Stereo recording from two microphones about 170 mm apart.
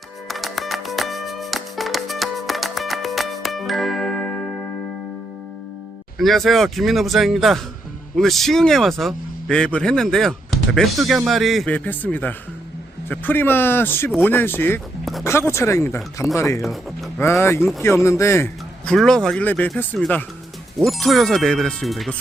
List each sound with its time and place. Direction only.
0.3 s music: centre (ahead or behind)
6.1 s speech: centre (ahead or behind)
18.9 s speech: 5° left (ahead or behind)